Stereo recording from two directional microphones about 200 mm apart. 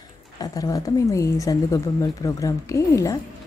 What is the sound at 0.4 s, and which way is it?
A woman's voice, 20° left (ahead or behind).